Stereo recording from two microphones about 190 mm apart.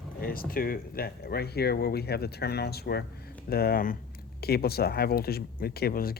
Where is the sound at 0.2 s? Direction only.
50° left (ahead or behind).